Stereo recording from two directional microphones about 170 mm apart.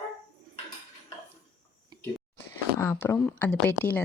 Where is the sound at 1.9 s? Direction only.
20° right (ahead or behind).